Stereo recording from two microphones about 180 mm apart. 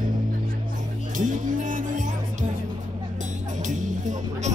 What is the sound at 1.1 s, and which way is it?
Music, 45° right (ahead or behind).